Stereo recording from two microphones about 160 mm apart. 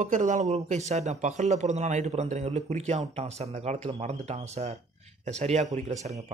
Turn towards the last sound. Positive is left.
turn(degrees=-45)  # may be behind; listen again after turning